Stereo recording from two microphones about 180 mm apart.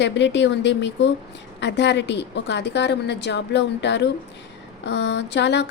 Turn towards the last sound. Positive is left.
turn(degrees=75)  # may be behind; listen again after turning